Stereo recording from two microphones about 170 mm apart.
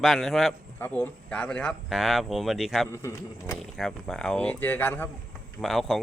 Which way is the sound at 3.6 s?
Centre (ahead or behind).